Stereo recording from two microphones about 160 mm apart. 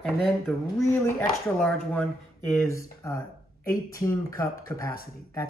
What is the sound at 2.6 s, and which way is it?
Speech, 20° left (ahead or behind).